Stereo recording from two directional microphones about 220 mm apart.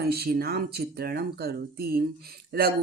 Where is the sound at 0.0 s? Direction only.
45° right (ahead or behind).